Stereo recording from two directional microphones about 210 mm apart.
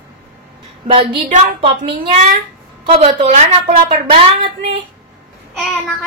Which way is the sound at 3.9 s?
25° right (ahead or behind).